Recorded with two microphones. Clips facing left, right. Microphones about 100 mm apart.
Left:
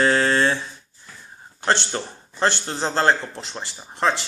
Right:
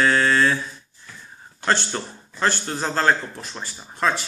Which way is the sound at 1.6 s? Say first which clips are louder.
Left 1 dB; 20° left (ahead or behind).